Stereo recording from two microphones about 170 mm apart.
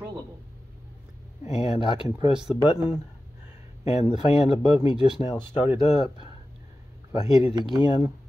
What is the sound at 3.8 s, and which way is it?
Speech, 40° left (ahead or behind).